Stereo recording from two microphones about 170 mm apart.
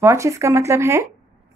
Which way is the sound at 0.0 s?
15° right (ahead or behind).